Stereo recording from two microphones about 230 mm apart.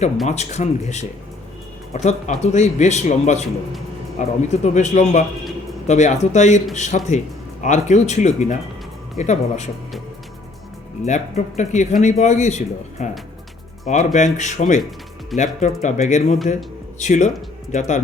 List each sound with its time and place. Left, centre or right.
0.3 s speech: left
11.0 s speech: left